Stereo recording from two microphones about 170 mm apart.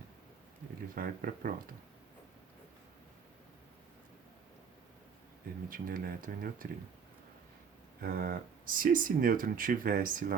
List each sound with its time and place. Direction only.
0.9 s speech: 55° right (ahead or behind)
5.6 s speech: 55° right (ahead or behind)
8.0 s speech: 55° right (ahead or behind)